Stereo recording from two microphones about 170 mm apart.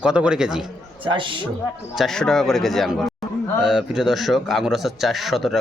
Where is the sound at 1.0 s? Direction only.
30° right (ahead or behind).